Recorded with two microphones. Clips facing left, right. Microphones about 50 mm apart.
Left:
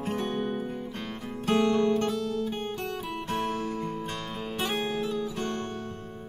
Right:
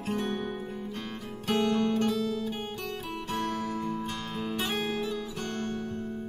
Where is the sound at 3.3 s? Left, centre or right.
Left.